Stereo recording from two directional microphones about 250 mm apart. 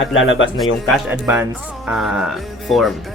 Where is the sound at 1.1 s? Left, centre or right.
Centre.